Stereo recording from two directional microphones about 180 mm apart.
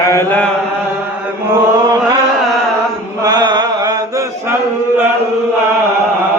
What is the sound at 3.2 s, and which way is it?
Chant, 20° right (ahead or behind).